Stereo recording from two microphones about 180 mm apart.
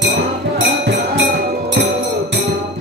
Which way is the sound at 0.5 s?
75° right (ahead or behind).